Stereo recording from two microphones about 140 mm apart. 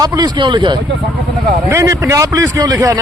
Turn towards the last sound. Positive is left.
turn(degrees=-25)  # may be behind; listen again after turning